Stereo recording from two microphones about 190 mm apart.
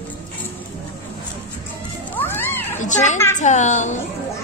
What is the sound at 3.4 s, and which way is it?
Speech, 40° left (ahead or behind).